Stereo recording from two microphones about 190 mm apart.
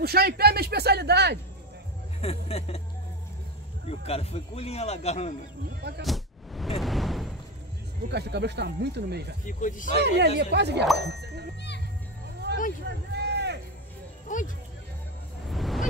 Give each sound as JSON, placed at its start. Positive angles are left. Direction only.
{"t": 0.0, "sound": "speech", "side_deg": -55}
{"t": 2.2, "sound": "a man's voice", "side_deg": 35}
{"t": 3.9, "sound": "a man's voice", "side_deg": 30}
{"t": 5.8, "sound": "speech", "side_deg": -60}
{"t": 6.0, "sound": "a sound", "side_deg": 0}
{"t": 8.1, "sound": "speech", "side_deg": -60}
{"t": 9.5, "sound": "speech", "side_deg": 45}
{"t": 10.0, "sound": "speech", "side_deg": -60}
{"t": 12.5, "sound": "a sound", "side_deg": -60}
{"t": 14.2, "sound": "speech", "side_deg": 40}
{"t": 15.4, "sound": "vehicle", "side_deg": 0}